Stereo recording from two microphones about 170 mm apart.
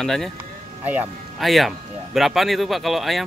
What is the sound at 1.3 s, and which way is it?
Speech, centre (ahead or behind).